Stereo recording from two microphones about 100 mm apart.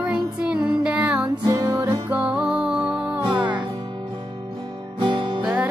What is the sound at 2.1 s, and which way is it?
Music, 10° right (ahead or behind).